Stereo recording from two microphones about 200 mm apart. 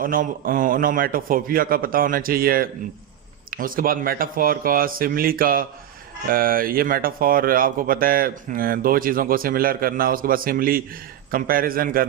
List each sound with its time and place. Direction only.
0.0 s speech: 45° right (ahead or behind)